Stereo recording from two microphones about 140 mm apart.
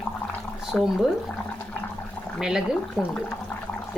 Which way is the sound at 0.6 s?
Centre (ahead or behind).